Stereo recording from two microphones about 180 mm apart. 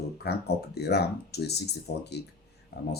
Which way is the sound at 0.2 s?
65° left (ahead or behind).